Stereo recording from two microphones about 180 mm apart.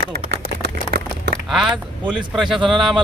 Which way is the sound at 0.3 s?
65° right (ahead or behind).